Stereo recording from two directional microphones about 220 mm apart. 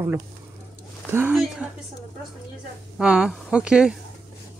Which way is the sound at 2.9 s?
5° right (ahead or behind).